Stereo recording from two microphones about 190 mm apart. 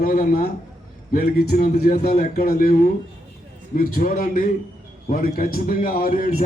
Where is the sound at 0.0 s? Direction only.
50° left (ahead or behind).